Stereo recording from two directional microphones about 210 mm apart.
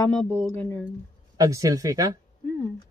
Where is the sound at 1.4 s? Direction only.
15° right (ahead or behind).